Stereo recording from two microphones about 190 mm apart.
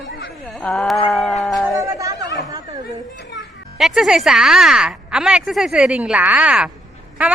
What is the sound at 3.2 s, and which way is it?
Music, 65° left (ahead or behind).